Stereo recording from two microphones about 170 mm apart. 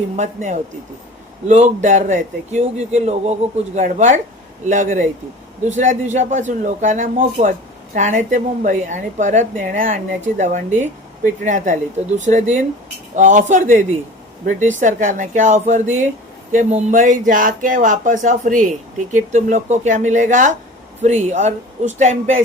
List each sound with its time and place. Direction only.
0.2 s speech: 45° right (ahead or behind)